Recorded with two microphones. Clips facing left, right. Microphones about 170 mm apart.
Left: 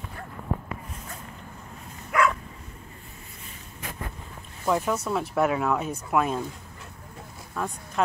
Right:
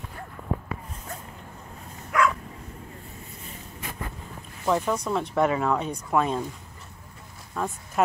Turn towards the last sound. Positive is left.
turn(degrees=-5)  # may be behind; listen again after turning